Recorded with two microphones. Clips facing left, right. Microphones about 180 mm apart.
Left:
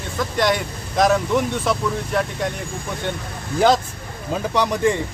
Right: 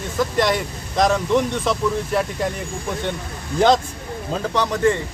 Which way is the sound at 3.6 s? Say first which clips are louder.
Right 1 dB; 5° left (ahead or behind).